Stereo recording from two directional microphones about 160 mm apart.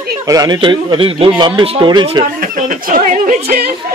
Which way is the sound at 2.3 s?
55° right (ahead or behind).